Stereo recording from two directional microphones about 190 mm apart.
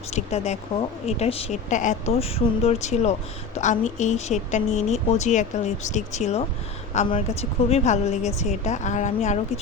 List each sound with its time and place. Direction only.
0.1 s speech: 35° left (ahead or behind)